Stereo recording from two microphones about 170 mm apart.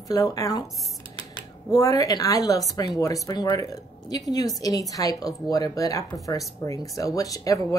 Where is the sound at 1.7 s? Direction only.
20° left (ahead or behind).